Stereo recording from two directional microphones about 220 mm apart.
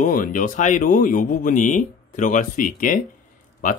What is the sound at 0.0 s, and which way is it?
Speech, 40° left (ahead or behind).